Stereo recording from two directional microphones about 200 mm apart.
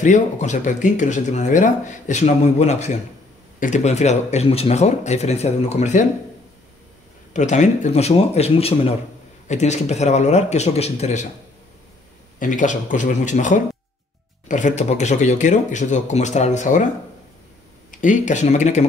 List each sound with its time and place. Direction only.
0.0 s speech: 35° left (ahead or behind)
7.3 s speech: 35° left (ahead or behind)
12.4 s speech: 40° left (ahead or behind)
17.9 s speech: 40° left (ahead or behind)